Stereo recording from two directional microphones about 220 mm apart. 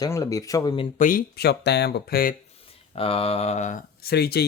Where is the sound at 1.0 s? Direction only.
40° left (ahead or behind).